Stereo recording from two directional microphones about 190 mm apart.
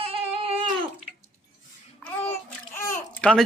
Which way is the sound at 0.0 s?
30° right (ahead or behind).